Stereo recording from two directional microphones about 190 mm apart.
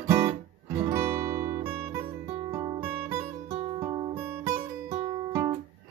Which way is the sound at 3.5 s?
30° right (ahead or behind).